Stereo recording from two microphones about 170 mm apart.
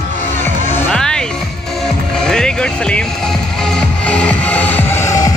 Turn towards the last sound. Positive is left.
turn(degrees=20)  # may be behind; listen again after turning